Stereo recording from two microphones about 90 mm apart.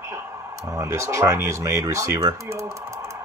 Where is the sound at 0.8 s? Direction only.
30° right (ahead or behind).